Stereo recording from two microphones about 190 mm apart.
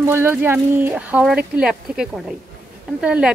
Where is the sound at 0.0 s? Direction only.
15° right (ahead or behind).